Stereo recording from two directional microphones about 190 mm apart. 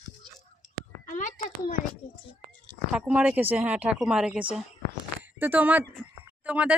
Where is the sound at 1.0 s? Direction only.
40° left (ahead or behind).